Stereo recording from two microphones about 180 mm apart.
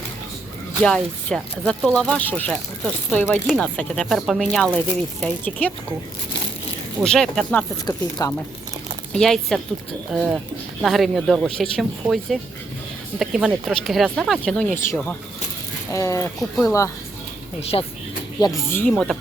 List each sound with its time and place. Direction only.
0.8 s speech: centre (ahead or behind)
7.0 s speech: 5° left (ahead or behind)
7.9 s speech: 20° left (ahead or behind)
9.1 s speech: centre (ahead or behind)
17.6 s speech: 35° left (ahead or behind)
18.3 s speech: 20° left (ahead or behind); by 19.1 s 5° left (ahead or behind)